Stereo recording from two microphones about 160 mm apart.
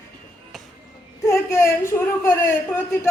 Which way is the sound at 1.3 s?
15° left (ahead or behind).